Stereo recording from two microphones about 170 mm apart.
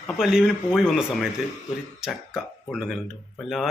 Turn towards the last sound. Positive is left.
turn(degrees=0)  # may be behind; listen again after turning